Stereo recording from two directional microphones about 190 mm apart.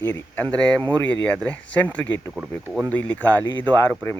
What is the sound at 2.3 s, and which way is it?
Speech, 5° right (ahead or behind).